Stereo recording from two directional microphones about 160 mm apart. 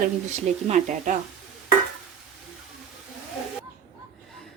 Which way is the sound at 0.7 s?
50° right (ahead or behind).